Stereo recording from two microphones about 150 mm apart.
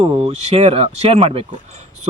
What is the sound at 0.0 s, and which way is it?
Speech, 40° right (ahead or behind).